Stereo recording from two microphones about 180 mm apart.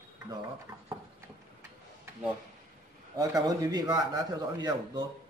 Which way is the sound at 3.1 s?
20° right (ahead or behind).